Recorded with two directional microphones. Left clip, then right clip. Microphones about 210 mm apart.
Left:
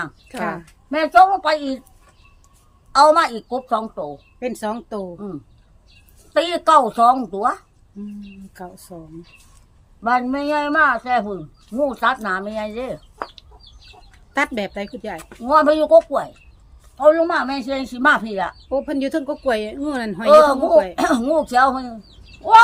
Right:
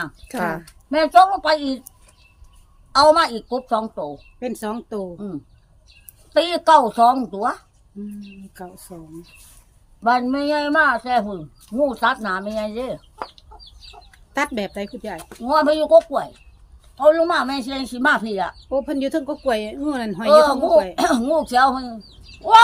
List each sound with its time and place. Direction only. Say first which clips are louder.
0.3 s a woman's voice: right 3 dB; 45° right (ahead or behind)
0.9 s a woman's voice: left 1 dB; centre (ahead or behind)
2.9 s a woman's voice: left 1 dB; centre (ahead or behind)
10.0 s a woman's voice: right 1 dB; centre (ahead or behind)
14.3 s a woman's voice: left 2 dB; 5° left (ahead or behind)